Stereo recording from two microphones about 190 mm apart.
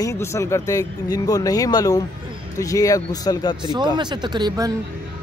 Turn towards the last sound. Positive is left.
turn(degrees=-20)  # may be behind; listen again after turning